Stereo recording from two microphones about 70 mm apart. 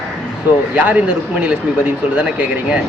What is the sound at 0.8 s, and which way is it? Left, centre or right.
Speech, right.